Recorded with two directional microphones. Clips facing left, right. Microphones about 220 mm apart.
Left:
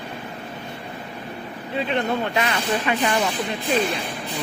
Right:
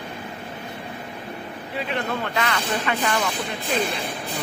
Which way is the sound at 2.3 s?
20° left (ahead or behind).